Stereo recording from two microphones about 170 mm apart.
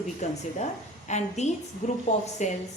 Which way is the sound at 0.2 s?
40° left (ahead or behind).